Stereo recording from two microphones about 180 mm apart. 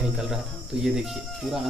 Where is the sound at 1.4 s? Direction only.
Centre (ahead or behind).